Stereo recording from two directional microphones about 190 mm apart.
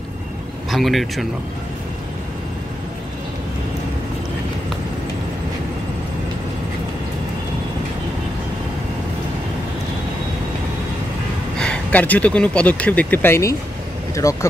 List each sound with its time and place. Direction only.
0.7 s speech: centre (ahead or behind)
11.6 s speech: 5° left (ahead or behind)